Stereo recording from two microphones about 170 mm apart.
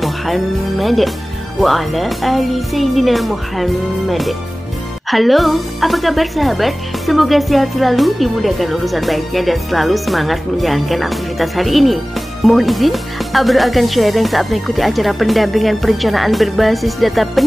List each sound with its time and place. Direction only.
0.0 s a woman's voice: centre (ahead or behind)